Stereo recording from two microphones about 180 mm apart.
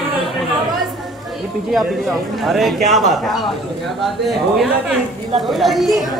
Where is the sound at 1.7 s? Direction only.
Centre (ahead or behind).